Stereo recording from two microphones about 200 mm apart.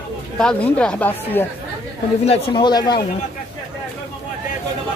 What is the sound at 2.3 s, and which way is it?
Speech, 20° left (ahead or behind).